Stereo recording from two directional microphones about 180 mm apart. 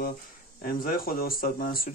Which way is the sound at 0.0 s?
55° left (ahead or behind).